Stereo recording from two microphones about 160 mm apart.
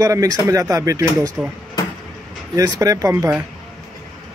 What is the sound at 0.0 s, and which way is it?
Speech, 20° right (ahead or behind).